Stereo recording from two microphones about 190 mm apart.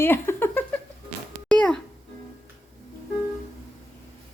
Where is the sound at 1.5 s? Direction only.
5° left (ahead or behind).